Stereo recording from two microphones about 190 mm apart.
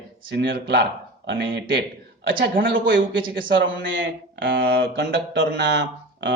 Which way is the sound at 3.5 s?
70° right (ahead or behind).